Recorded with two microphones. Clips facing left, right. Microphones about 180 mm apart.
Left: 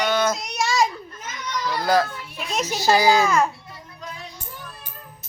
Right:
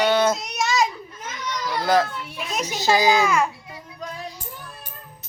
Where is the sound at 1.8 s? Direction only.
20° right (ahead or behind).